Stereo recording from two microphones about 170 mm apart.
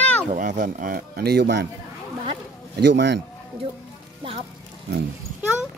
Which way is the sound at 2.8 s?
90° right.